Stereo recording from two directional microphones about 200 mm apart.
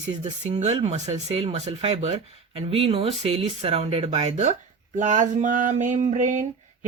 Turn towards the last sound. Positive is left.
turn(degrees=-40)  # may be behind; listen again after turning